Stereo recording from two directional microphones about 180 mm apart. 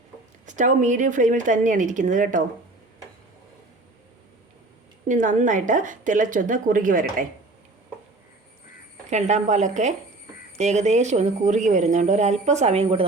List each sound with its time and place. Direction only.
0.4 s a woman's voice: 45° right (ahead or behind)
5.0 s a woman's voice: 45° right (ahead or behind)
9.0 s a woman's voice: 40° right (ahead or behind)